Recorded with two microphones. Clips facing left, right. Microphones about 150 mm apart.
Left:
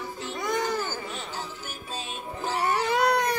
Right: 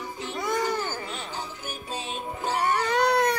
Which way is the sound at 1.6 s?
15° right (ahead or behind).